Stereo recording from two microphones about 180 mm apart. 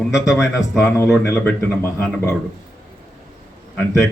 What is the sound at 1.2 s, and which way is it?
Speech, 15° left (ahead or behind).